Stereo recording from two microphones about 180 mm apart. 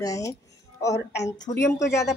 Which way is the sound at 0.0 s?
20° left (ahead or behind).